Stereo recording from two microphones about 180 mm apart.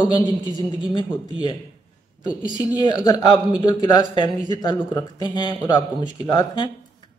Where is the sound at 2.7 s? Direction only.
25° left (ahead or behind).